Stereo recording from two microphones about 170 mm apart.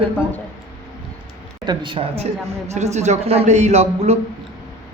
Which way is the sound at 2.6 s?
40° right (ahead or behind).